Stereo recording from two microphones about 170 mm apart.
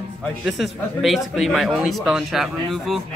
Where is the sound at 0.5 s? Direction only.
Centre (ahead or behind).